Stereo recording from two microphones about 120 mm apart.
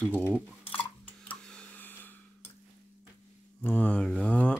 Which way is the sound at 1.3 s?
10° left (ahead or behind).